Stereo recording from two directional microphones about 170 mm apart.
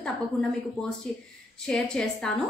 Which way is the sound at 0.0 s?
5° left (ahead or behind).